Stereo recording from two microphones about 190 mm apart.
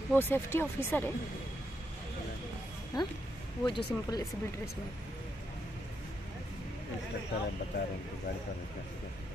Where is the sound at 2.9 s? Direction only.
20° left (ahead or behind).